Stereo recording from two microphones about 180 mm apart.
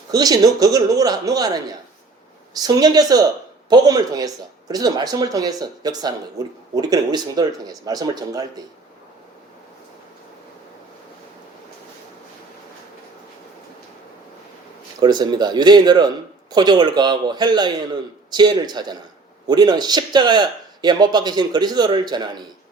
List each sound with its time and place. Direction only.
0.1 s speech: 20° right (ahead or behind)
15.0 s speech: 25° right (ahead or behind)